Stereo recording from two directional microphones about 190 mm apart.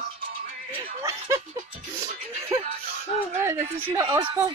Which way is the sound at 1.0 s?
15° right (ahead or behind).